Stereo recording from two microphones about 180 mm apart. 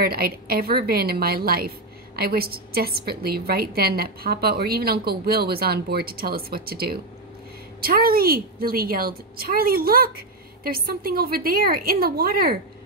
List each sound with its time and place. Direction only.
0.0 s a woman's voice: 55° right (ahead or behind)